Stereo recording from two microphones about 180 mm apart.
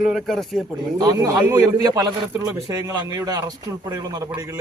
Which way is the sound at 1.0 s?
15° right (ahead or behind).